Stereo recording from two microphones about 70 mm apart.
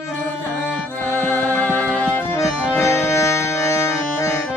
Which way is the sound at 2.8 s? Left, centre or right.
Left.